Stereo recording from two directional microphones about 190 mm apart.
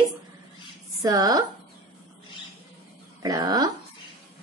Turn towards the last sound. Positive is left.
turn(degrees=-20)  # may be behind; listen again after turning